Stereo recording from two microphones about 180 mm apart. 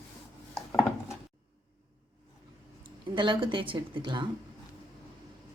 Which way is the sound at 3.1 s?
25° right (ahead or behind).